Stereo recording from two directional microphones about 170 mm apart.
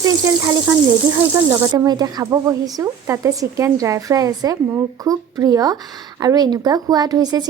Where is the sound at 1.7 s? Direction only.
25° right (ahead or behind).